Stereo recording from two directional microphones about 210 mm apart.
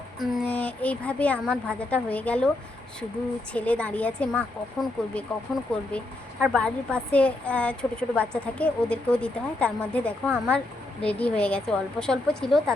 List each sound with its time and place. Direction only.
0.2 s a woman's voice: 5° left (ahead or behind)
3.5 s a woman's voice: 5° left (ahead or behind)